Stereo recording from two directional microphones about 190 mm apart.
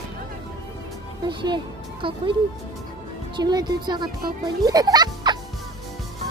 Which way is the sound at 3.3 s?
20° right (ahead or behind).